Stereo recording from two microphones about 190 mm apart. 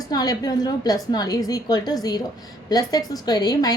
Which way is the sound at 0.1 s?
20° left (ahead or behind).